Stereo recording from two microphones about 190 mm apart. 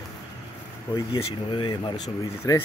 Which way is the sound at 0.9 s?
25° left (ahead or behind).